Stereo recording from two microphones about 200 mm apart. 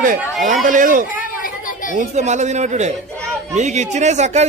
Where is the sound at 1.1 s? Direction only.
45° left (ahead or behind).